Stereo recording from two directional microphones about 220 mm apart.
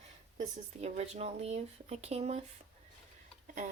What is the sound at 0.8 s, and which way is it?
Speech, 30° right (ahead or behind).